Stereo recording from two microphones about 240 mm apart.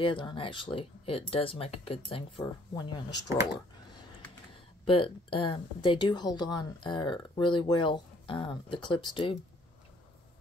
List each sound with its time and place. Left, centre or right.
0.0 s a woman's voice: left
4.8 s a woman's voice: left